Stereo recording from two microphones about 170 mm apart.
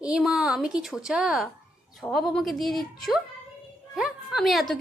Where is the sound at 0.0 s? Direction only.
5° right (ahead or behind).